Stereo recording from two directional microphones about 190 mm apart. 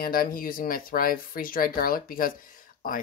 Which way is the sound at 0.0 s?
50° left (ahead or behind).